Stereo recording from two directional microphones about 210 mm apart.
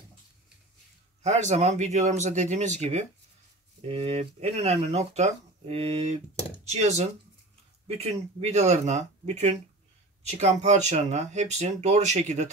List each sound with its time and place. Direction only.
1.2 s speech: 30° right (ahead or behind)